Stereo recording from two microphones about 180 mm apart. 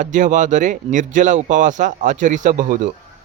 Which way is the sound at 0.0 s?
45° right (ahead or behind).